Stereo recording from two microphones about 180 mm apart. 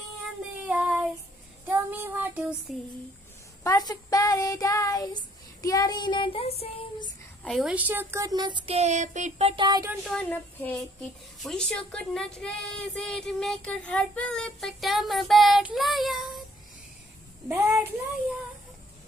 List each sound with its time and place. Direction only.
0.7 s child singing: 10° right (ahead or behind)
2.7 s a woman's voice: centre (ahead or behind)
3.6 s child singing: 20° left (ahead or behind)
7.4 s speech: centre (ahead or behind); by 9.8 s 25° right (ahead or behind)
10.0 s a woman's voice: 5° left (ahead or behind)
17.5 s speech: 15° right (ahead or behind)